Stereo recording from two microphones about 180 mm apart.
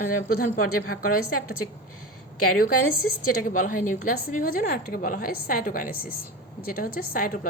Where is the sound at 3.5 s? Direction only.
50° left (ahead or behind).